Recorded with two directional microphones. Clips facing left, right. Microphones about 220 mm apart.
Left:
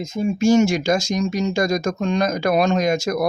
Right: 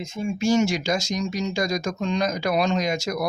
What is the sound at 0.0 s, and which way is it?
Speech, 40° left (ahead or behind).